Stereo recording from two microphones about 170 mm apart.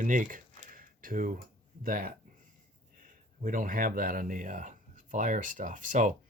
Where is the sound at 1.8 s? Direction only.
55° right (ahead or behind).